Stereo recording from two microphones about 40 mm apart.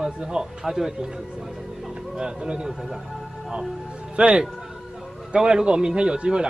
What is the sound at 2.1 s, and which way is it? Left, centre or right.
Speech, right.